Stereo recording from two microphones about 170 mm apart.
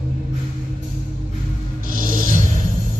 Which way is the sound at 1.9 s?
55° right (ahead or behind).